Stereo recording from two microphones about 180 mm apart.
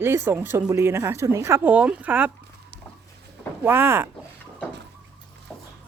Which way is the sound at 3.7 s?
15° right (ahead or behind).